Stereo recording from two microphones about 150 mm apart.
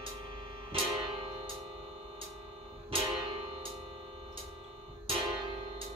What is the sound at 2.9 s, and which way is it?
Music, 35° right (ahead or behind).